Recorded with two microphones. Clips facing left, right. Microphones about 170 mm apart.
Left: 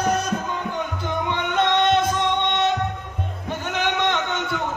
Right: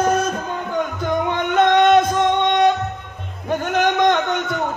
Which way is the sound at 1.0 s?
50° right (ahead or behind).